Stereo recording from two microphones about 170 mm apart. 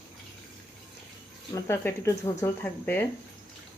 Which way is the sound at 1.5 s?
15° left (ahead or behind).